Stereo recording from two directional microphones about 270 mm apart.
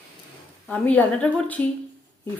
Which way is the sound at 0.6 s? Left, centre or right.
Centre.